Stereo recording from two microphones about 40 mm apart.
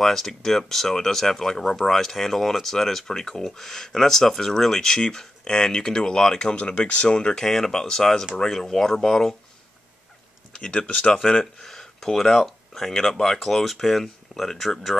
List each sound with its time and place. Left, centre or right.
0.0 s speech: centre
6.5 s speech: left
7.4 s speech: centre
10.5 s a sound: left
11.1 s speech: centre